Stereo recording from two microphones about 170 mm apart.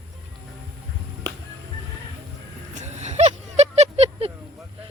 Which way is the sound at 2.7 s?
40° right (ahead or behind).